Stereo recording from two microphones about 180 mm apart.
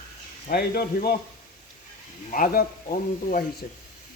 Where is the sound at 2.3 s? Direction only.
50° left (ahead or behind).